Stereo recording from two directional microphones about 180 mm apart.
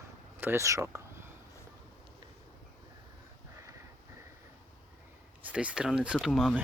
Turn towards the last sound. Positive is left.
turn(degrees=0)  # may be behind; listen again after turning